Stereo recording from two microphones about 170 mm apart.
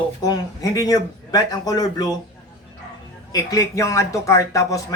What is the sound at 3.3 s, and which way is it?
A man's voice, 20° left (ahead or behind).